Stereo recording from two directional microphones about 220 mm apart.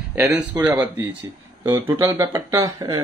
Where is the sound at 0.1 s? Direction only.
5° right (ahead or behind).